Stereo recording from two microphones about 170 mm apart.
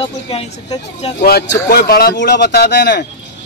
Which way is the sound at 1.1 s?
65° left (ahead or behind).